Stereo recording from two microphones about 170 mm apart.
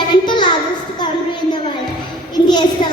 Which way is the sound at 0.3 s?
25° left (ahead or behind).